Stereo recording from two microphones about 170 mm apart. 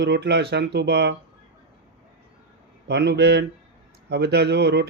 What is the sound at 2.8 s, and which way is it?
Speech, 75° right (ahead or behind).